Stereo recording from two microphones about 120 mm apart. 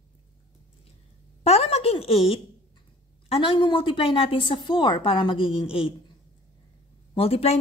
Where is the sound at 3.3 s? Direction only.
45° left (ahead or behind).